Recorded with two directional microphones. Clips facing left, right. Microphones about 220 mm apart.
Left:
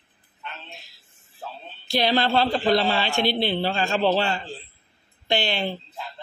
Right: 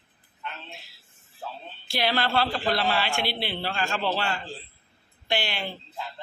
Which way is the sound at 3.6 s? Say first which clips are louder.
Left 6 dB; 25° left (ahead or behind).